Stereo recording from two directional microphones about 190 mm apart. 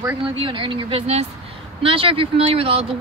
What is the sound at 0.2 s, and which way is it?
Speech, 25° right (ahead or behind).